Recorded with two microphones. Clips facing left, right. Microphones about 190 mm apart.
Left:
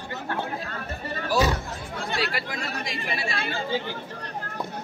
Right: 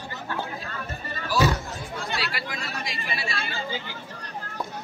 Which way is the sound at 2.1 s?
45° left (ahead or behind).